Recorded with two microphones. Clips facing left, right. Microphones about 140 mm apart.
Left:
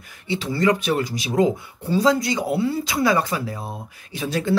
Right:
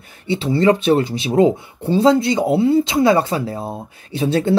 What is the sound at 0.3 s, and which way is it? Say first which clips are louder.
Speech: right 5 dB; 30° right (ahead or behind).